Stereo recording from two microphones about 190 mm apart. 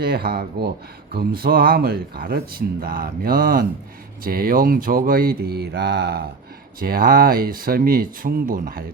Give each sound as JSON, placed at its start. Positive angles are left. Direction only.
{"t": 0.0, "sound": "speech", "side_deg": -55}